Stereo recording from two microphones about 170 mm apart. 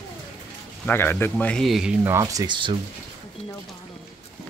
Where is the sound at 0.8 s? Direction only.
10° left (ahead or behind).